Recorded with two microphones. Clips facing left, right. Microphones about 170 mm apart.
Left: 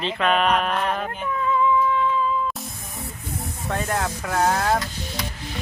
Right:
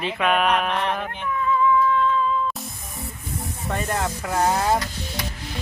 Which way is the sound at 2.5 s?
Centre (ahead or behind).